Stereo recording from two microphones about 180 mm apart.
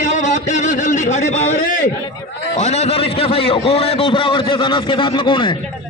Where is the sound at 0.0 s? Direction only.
40° left (ahead or behind).